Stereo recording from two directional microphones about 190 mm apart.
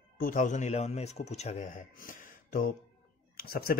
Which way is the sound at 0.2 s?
45° left (ahead or behind).